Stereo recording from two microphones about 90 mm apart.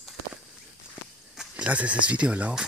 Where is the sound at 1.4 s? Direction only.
15° right (ahead or behind).